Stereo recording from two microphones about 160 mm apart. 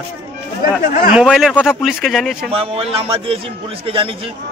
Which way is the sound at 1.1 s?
5° right (ahead or behind).